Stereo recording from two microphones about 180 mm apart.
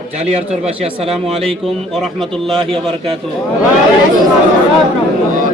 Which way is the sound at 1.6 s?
Centre (ahead or behind).